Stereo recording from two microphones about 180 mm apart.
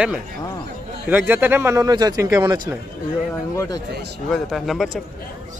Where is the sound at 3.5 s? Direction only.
20° left (ahead or behind).